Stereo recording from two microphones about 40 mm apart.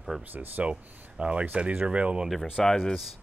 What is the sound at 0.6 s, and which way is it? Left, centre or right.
Speech, right.